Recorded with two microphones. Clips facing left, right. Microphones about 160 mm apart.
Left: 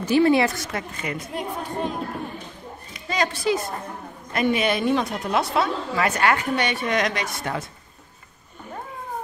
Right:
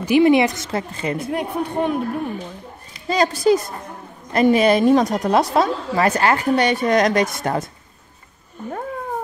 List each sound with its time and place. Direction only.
0.0 s speech: 15° right (ahead or behind)
0.7 s speech: 30° right (ahead or behind)
1.3 s a woman's voice: 65° right (ahead or behind)
2.9 s a woman's voice: 35° right (ahead or behind)